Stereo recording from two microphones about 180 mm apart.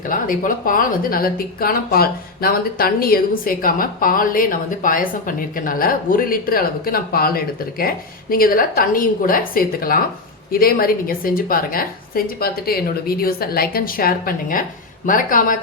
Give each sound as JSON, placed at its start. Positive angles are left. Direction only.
{"t": 0.1, "sound": "a woman's voice", "side_deg": 50}